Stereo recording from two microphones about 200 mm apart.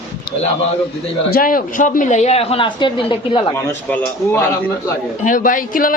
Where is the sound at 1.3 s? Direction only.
45° left (ahead or behind); by 3.4 s 25° left (ahead or behind).